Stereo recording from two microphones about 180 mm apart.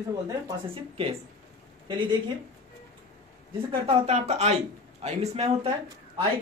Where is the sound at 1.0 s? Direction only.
35° right (ahead or behind).